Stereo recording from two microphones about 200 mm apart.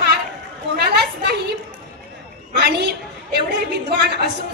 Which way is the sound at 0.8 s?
55° right (ahead or behind).